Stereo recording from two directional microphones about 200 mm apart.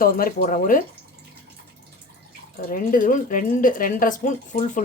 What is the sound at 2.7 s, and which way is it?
Speech, 45° left (ahead or behind).